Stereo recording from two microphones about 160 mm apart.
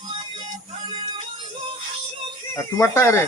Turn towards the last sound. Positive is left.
turn(degrees=15)  # may be behind; listen again after turning